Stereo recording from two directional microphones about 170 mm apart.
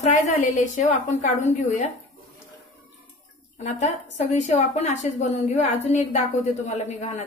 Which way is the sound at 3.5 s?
40° left (ahead or behind).